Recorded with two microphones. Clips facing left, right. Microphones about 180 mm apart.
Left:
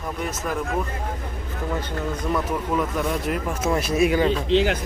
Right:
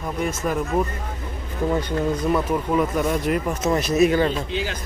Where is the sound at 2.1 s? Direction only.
10° right (ahead or behind); by 4.3 s 10° left (ahead or behind).